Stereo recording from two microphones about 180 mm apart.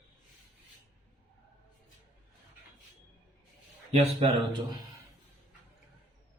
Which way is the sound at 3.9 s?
35° right (ahead or behind).